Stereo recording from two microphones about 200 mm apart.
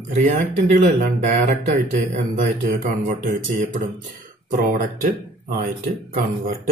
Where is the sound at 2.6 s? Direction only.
40° right (ahead or behind).